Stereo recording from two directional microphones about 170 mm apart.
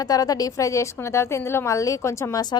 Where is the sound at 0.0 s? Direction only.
20° left (ahead or behind).